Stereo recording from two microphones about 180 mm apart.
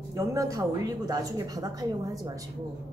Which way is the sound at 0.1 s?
20° right (ahead or behind).